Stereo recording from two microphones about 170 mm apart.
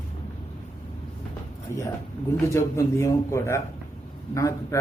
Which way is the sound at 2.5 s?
15° left (ahead or behind).